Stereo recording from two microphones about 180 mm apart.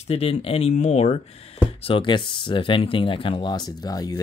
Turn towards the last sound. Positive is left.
turn(degrees=20)  # may be behind; listen again after turning